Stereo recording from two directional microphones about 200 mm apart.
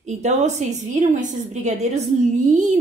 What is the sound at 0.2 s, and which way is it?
A woman's voice, 35° right (ahead or behind).